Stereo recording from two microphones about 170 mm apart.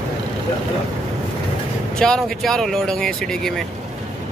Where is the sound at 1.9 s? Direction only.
5° left (ahead or behind).